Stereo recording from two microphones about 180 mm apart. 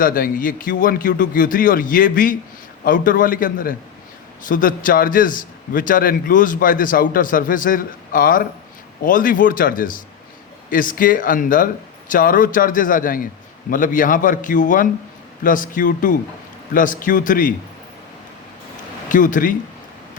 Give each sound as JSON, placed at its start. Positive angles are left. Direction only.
{"t": 0.0, "sound": "a man's voice", "side_deg": 50}
{"t": 19.0, "sound": "speech", "side_deg": 45}